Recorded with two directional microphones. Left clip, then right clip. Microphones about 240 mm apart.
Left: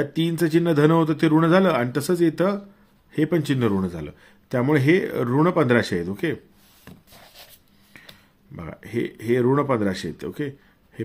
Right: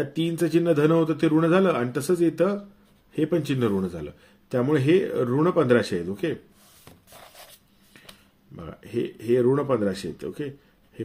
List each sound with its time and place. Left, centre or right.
0.0 s a man's voice: left
8.5 s a man's voice: left